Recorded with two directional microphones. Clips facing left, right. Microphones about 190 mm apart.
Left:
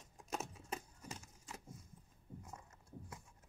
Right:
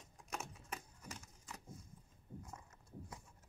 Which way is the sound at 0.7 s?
20° left (ahead or behind).